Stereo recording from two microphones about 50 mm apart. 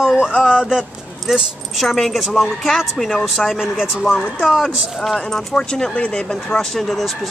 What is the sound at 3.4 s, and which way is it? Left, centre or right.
Speech, centre.